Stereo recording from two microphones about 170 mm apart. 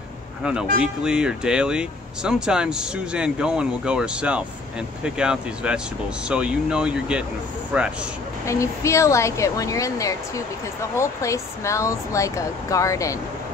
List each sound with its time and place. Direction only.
0.4 s speech: 5° right (ahead or behind)
8.5 s a woman's voice: 15° left (ahead or behind)